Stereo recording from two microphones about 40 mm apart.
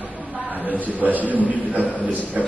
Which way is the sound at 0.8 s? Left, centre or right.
Right.